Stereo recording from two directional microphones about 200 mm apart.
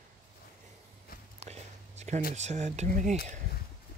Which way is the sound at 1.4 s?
35° right (ahead or behind).